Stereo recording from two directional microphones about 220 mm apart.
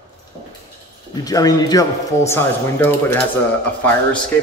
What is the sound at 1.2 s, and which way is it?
Speech, 15° left (ahead or behind).